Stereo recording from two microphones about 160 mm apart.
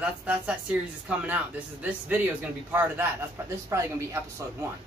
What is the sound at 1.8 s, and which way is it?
Speech, 10° right (ahead or behind).